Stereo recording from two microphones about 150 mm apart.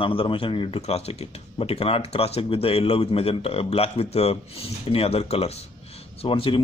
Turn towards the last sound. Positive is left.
turn(degrees=35)  # may be behind; listen again after turning